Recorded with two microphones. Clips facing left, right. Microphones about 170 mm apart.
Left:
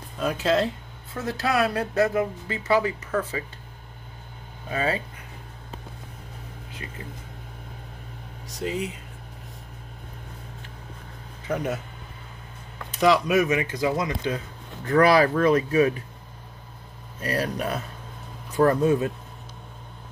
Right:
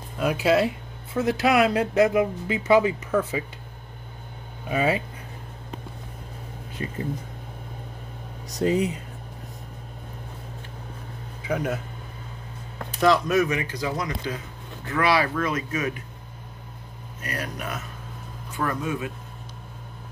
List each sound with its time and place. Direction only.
0.2 s speech: 10° right (ahead or behind)
4.6 s speech: 15° right (ahead or behind)
11.4 s speech: centre (ahead or behind)
13.0 s speech: 5° left (ahead or behind)
13.4 s speech: 20° left (ahead or behind)
14.9 s speech: 40° left (ahead or behind)
17.2 s speech: 30° left (ahead or behind)